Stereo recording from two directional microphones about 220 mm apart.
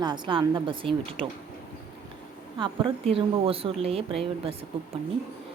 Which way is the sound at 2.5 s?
20° right (ahead or behind).